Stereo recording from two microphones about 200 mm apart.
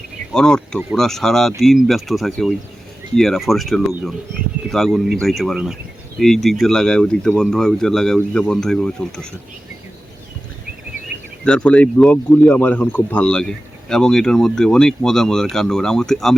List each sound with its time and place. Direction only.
0.3 s speech: 5° left (ahead or behind)
11.1 s a sound: 55° right (ahead or behind)
11.4 s speech: 5° left (ahead or behind)